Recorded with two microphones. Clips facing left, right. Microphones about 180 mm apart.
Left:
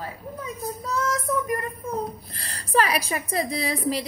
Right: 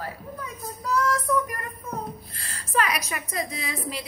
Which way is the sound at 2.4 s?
35° left (ahead or behind).